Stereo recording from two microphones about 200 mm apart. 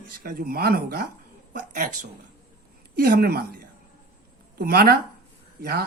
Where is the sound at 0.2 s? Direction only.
45° right (ahead or behind).